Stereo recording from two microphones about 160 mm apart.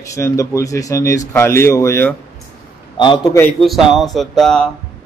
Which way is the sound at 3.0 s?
30° left (ahead or behind).